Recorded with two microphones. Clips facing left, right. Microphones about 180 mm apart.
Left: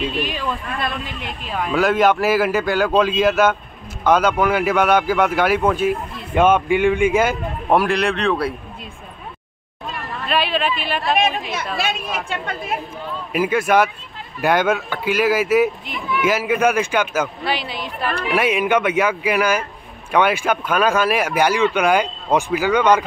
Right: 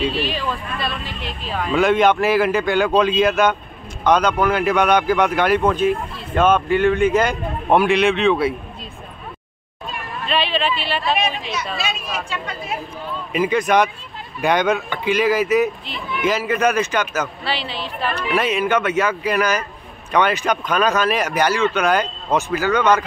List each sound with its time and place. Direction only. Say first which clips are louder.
1.2 s speech: right 1 dB; 15° left (ahead or behind)
10.2 s speech: even; 10° left (ahead or behind)
11.1 s a woman's voice: left 3 dB; 50° left (ahead or behind)
13.3 s speech: even; 5° left (ahead or behind)